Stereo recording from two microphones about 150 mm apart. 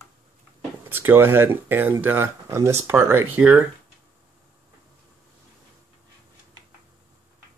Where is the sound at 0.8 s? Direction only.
15° right (ahead or behind).